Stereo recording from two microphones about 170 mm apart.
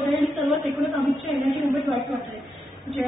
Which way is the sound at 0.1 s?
Centre (ahead or behind).